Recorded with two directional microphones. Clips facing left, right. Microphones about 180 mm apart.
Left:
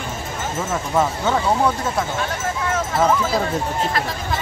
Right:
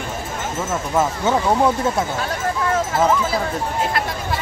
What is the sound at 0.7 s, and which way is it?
Speech, 5° right (ahead or behind).